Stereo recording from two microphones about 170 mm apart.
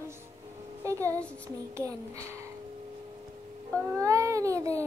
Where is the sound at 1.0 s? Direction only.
10° left (ahead or behind).